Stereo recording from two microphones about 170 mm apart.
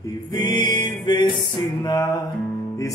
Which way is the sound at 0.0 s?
25° left (ahead or behind).